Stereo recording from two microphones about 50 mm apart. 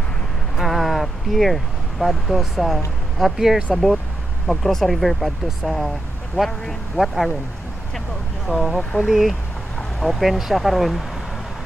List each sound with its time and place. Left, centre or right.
0.6 s vehicle: centre
3.2 s speech: centre
7.0 s speech: centre
8.5 s speech: centre